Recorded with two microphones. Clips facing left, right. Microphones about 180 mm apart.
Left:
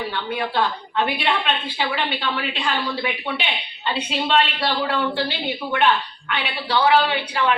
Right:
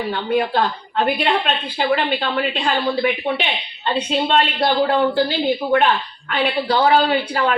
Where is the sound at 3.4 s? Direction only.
45° right (ahead or behind).